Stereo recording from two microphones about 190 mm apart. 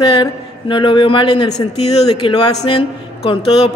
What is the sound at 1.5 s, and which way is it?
Speech, 35° left (ahead or behind).